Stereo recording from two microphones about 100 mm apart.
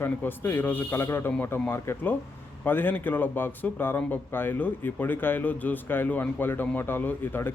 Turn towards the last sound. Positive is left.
turn(degrees=20)  # may be behind; listen again after turning